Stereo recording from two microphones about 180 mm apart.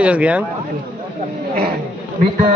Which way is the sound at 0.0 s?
5° right (ahead or behind).